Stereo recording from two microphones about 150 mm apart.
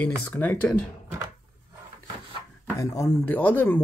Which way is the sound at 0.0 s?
10° left (ahead or behind).